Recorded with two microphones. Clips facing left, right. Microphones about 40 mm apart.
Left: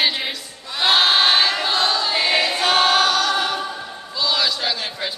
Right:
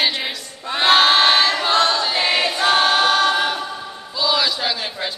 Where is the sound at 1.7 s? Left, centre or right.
Right.